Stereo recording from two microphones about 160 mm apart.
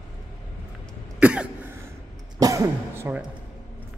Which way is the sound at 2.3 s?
20° right (ahead or behind).